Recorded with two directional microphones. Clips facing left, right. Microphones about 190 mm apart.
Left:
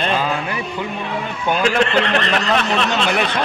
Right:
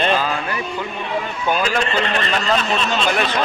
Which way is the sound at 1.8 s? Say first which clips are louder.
Left 3 dB; 70° left (ahead or behind).